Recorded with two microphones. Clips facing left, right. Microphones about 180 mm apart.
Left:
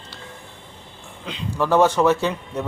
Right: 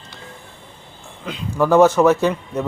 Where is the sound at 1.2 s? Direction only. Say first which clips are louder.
Right 4 dB; 5° right (ahead or behind).